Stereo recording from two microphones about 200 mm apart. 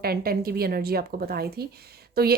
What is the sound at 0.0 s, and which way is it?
A woman's voice, 50° right (ahead or behind).